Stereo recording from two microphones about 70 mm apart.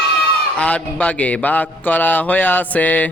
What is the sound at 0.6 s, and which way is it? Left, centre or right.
Speech, centre.